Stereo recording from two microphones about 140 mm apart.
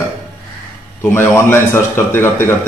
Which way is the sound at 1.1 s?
15° left (ahead or behind).